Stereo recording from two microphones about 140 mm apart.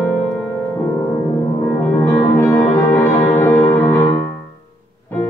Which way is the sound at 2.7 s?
15° left (ahead or behind).